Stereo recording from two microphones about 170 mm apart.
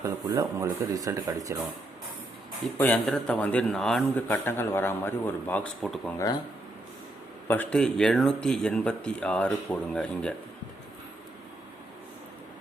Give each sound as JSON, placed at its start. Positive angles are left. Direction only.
{"t": 0.0, "sound": "speech", "side_deg": -20}
{"t": 2.7, "sound": "a man's voice", "side_deg": 10}
{"t": 7.4, "sound": "speech", "side_deg": 10}